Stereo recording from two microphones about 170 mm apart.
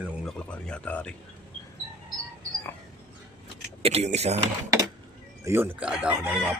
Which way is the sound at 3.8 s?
35° right (ahead or behind).